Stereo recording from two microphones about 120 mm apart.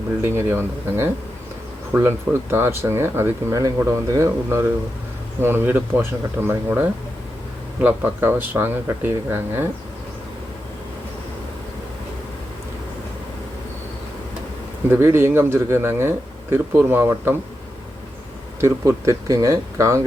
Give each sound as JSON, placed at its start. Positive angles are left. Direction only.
{"t": 0.2, "sound": "a man's voice", "side_deg": -20}
{"t": 14.8, "sound": "a man's voice", "side_deg": -20}
{"t": 18.6, "sound": "a man's voice", "side_deg": -25}